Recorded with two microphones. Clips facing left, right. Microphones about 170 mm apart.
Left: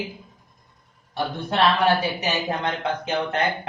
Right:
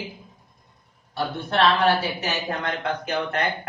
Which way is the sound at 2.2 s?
20° left (ahead or behind).